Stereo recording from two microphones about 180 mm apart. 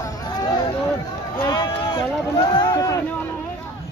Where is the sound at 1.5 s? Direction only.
25° left (ahead or behind).